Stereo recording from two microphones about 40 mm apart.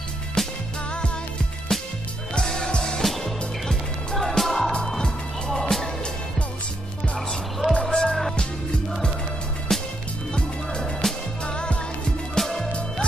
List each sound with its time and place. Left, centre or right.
0.4 s music: centre
1.7 s music: centre
3.0 s music: centre
5.6 s music: centre
7.2 s music: centre
7.9 s music: centre
9.7 s music: centre
12.4 s music: centre